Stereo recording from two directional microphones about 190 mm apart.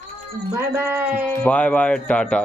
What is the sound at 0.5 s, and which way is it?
Speech, 15° right (ahead or behind).